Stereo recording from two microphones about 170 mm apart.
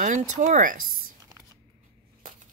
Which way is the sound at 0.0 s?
45° right (ahead or behind).